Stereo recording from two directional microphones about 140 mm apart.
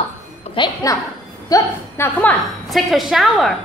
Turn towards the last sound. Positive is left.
turn(degrees=0)  # may be behind; listen again after turning